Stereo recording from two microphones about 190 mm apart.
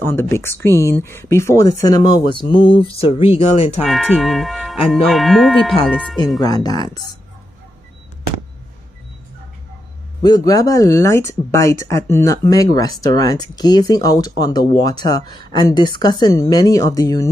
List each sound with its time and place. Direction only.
0.0 s speech: 10° left (ahead or behind); by 3.7 s 30° left (ahead or behind)
3.8 s speech: centre (ahead or behind)
6.4 s speech: 20° left (ahead or behind)
10.2 s speech: 20° left (ahead or behind)